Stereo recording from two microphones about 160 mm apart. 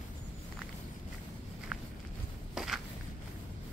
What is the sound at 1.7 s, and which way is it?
Walk, 5° right (ahead or behind).